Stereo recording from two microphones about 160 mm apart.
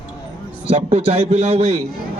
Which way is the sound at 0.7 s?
40° right (ahead or behind).